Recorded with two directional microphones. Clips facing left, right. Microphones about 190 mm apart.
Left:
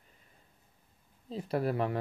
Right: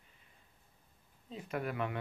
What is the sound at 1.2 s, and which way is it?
Speech, 35° left (ahead or behind).